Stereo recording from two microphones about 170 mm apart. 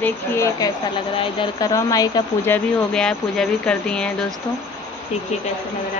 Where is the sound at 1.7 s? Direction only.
20° left (ahead or behind).